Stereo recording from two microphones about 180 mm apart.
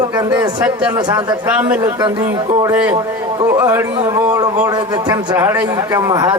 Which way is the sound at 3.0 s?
20° right (ahead or behind).